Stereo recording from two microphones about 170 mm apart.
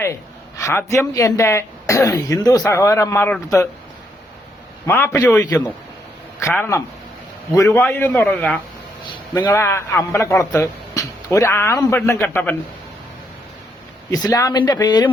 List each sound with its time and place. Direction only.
0.0 s speech: 15° left (ahead or behind)
4.9 s speech: 15° left (ahead or behind)
9.3 s speech: 15° left (ahead or behind)
14.1 s speech: 20° left (ahead or behind)